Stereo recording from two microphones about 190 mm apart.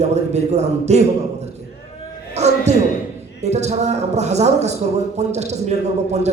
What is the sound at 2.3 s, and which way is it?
A man's voice, 35° right (ahead or behind).